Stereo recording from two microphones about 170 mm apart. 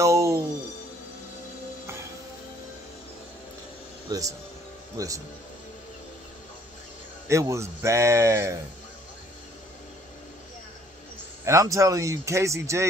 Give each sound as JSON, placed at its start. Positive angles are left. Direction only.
{"t": 0.0, "sound": "music", "side_deg": -20}
{"t": 4.9, "sound": "speech", "side_deg": -20}
{"t": 7.2, "sound": "speech", "side_deg": -15}
{"t": 11.4, "sound": "speech", "side_deg": -20}